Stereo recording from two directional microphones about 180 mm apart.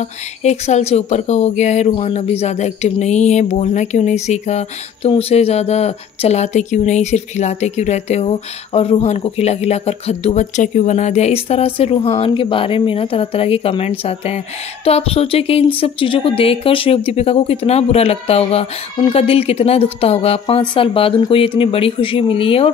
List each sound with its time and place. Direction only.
0.0 s speech: 40° left (ahead or behind)